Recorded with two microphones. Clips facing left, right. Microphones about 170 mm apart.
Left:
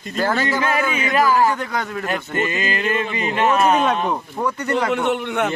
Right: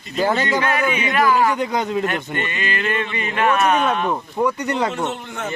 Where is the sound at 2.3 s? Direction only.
30° left (ahead or behind).